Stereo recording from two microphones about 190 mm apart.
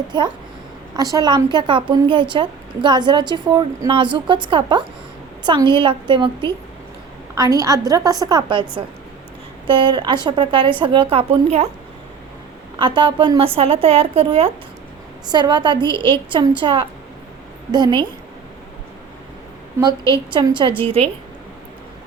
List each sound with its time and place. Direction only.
0.1 s a woman's voice: 25° right (ahead or behind)
9.6 s a woman's voice: 25° right (ahead or behind)
12.8 s a woman's voice: 25° right (ahead or behind)
19.8 s a woman's voice: 25° right (ahead or behind)